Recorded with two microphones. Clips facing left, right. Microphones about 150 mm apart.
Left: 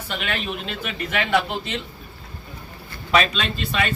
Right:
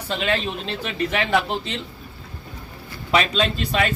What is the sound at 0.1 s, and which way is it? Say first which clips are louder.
Speech: right 4 dB; 30° right (ahead or behind).